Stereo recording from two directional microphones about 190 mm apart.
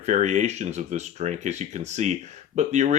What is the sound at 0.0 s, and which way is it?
Speech, 40° right (ahead or behind).